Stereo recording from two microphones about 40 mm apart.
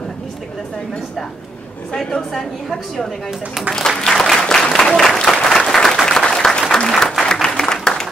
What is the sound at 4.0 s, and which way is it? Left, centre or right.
Applause, centre.